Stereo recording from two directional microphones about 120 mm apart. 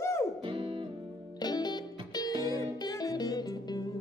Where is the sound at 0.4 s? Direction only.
45° right (ahead or behind).